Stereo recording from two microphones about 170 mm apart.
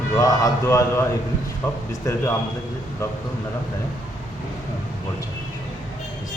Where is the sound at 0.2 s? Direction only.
20° left (ahead or behind).